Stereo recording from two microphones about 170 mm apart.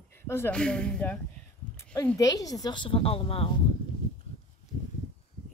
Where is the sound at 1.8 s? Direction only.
10° left (ahead or behind).